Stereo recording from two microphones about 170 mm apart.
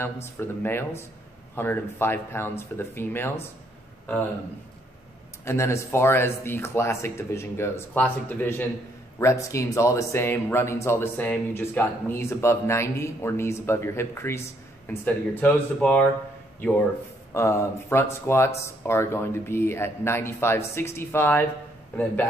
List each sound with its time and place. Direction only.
0.0 s speech: 15° left (ahead or behind)
5.4 s speech: 15° left (ahead or behind)
17.3 s speech: 15° left (ahead or behind)